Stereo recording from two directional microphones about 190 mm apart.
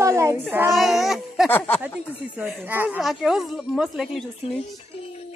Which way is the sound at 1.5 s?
10° left (ahead or behind).